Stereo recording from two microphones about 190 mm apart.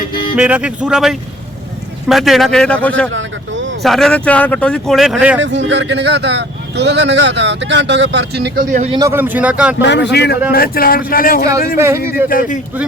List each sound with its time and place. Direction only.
0.1 s music: 25° left (ahead or behind)
0.3 s speech: 5° right (ahead or behind)
3.1 s vehicle: 80° right
3.8 s speech: centre (ahead or behind)
5.4 s a man's voice: 70° right (ahead or behind)
8.7 s a man's voice: 35° right (ahead or behind)
9.0 s a man's voice: 15° right (ahead or behind)
9.8 s speech: 65° left (ahead or behind); by 11.4 s 50° left (ahead or behind)
11.8 s a man's voice: 15° right (ahead or behind)
12.3 s speech: 45° left (ahead or behind)